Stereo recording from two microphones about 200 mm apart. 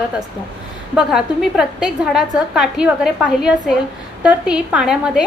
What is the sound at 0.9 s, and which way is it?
A woman's voice, centre (ahead or behind).